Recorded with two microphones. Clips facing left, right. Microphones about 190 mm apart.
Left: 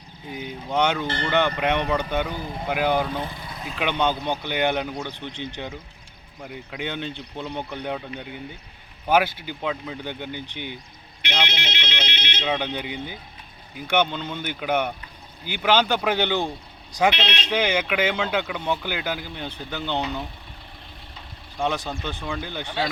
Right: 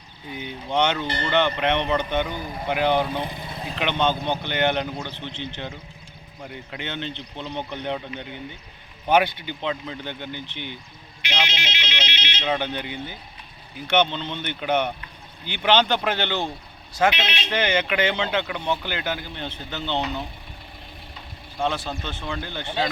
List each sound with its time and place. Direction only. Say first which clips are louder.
0.3 s speech: even; 5° left (ahead or behind)
3.1 s speech: right 1 dB; 15° right (ahead or behind)
3.8 s speech: even; 10° left (ahead or behind)
6.4 s speech: left 2 dB; 5° left (ahead or behind)
11.2 s ringtone: left 1 dB; 60° left (ahead or behind)
12.4 s speech: right 1 dB; 5° left (ahead or behind)
17.1 s speech: left 1 dB; centre (ahead or behind)
17.5 s speech: even; 10° left (ahead or behind)
21.6 s speech: even; 15° left (ahead or behind)
22.6 s speech: right 2 dB; 15° right (ahead or behind)